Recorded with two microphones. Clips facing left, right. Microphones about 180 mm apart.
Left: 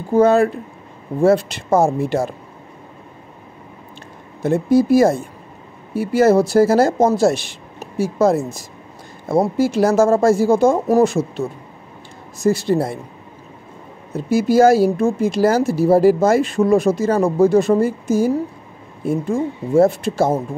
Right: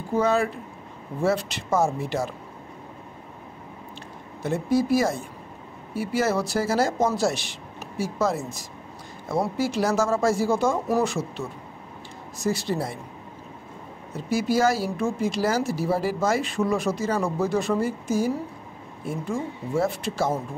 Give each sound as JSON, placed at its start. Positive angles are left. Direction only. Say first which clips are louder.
{"t": 0.1, "sound": "speech", "louder": "left 9 dB", "side_deg": 50}
{"t": 4.4, "sound": "speech", "louder": "left 8 dB", "side_deg": 50}
{"t": 12.4, "sound": "speech", "louder": "left 9 dB", "side_deg": 55}
{"t": 14.1, "sound": "speech", "louder": "left 9 dB", "side_deg": 55}